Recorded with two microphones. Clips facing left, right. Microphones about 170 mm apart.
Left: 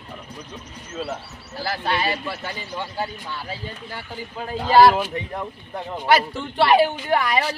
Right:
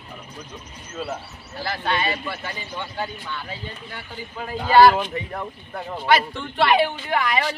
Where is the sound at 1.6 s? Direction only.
30° left (ahead or behind).